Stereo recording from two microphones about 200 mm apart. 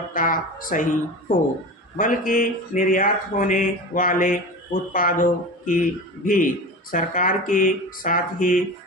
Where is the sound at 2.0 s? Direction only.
40° left (ahead or behind).